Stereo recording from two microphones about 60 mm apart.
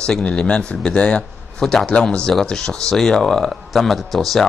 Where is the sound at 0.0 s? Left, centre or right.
Centre.